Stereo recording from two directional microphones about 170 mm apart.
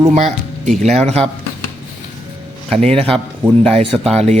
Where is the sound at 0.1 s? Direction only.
40° right (ahead or behind).